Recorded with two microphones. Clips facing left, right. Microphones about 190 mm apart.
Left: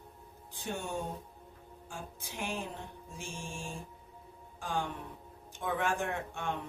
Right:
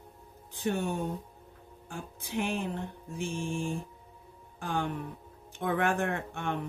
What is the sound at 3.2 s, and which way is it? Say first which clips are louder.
Speech: right 10 dB; 60° right (ahead or behind).